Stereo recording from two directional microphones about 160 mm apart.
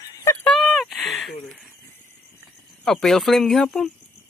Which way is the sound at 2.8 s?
Centre (ahead or behind).